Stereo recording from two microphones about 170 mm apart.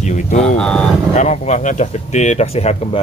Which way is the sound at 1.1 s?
40° left (ahead or behind).